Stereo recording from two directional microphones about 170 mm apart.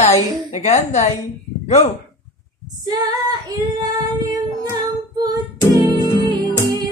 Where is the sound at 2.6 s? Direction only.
25° right (ahead or behind).